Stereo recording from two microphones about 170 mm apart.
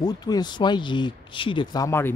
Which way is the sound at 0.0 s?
25° left (ahead or behind).